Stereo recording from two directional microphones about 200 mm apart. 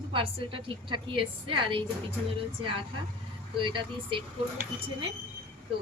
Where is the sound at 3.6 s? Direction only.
25° right (ahead or behind).